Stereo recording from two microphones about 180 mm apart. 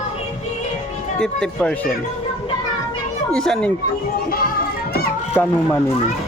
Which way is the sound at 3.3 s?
5° left (ahead or behind).